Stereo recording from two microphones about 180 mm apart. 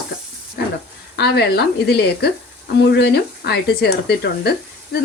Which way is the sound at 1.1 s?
65° left (ahead or behind).